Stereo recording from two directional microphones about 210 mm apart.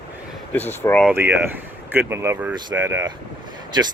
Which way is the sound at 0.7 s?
10° left (ahead or behind).